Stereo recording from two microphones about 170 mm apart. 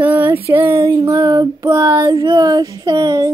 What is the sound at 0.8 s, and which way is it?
Child singing, 25° right (ahead or behind).